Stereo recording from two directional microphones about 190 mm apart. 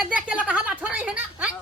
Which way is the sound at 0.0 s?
5° right (ahead or behind).